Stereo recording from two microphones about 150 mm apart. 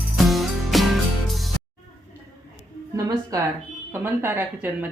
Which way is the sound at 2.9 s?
20° right (ahead or behind).